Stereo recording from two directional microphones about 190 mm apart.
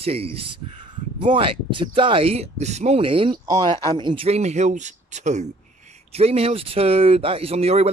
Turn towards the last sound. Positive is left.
turn(degrees=-30)  # may be behind; listen again after turning